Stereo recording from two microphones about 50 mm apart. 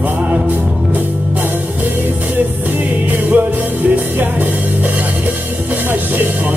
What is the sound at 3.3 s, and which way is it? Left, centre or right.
Music, right.